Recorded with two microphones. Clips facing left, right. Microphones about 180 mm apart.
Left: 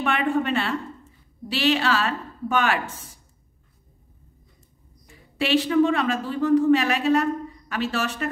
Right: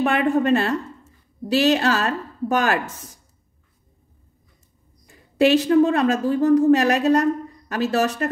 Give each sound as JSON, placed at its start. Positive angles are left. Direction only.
{"t": 0.0, "sound": "a woman's voice", "side_deg": -40}
{"t": 5.4, "sound": "a woman's voice", "side_deg": -40}